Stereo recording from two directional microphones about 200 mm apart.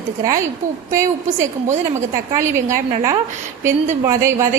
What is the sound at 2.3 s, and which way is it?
Speech, 15° right (ahead or behind).